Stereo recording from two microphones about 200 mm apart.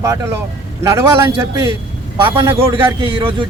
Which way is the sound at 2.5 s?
25° right (ahead or behind).